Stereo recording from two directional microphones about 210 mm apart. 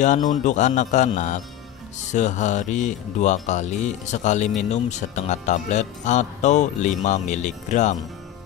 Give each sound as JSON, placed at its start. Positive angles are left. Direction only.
{"t": 0.3, "sound": "speech", "side_deg": 35}